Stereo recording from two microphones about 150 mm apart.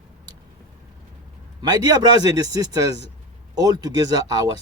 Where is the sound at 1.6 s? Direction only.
25° right (ahead or behind).